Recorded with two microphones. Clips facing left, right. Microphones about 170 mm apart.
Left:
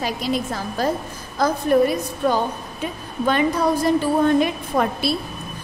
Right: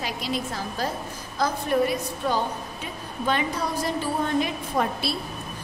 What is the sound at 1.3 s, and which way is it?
A woman's voice, 50° left (ahead or behind).